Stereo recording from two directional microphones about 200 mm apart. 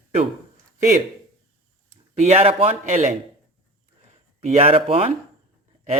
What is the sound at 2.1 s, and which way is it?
Speech, 35° right (ahead or behind).